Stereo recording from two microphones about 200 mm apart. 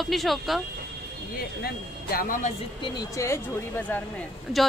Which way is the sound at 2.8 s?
20° left (ahead or behind).